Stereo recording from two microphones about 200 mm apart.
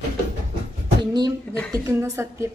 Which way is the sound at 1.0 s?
20° right (ahead or behind).